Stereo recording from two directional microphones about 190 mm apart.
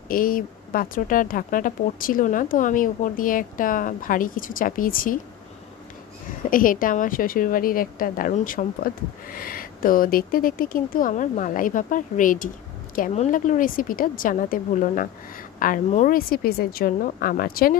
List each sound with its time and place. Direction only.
0.1 s a woman's voice: 50° left (ahead or behind)
6.5 s a woman's voice: 45° left (ahead or behind)